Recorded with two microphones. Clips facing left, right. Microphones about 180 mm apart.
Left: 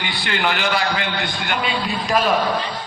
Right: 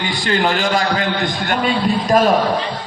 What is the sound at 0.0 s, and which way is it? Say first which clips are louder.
A man's voice: right 5 dB; 40° right (ahead or behind).